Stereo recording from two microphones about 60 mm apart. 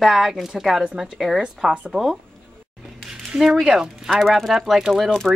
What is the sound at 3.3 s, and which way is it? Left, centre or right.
Speech, centre.